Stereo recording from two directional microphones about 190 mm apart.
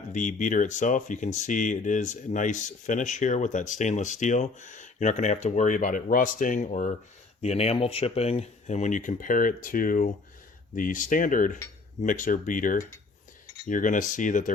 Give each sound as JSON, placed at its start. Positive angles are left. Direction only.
{"t": 0.1, "sound": "speech", "side_deg": 45}
{"t": 10.8, "sound": "cutlery", "side_deg": 45}
{"t": 14.2, "sound": "speech", "side_deg": 40}